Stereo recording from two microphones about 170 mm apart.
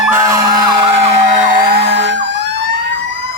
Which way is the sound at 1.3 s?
55° right (ahead or behind).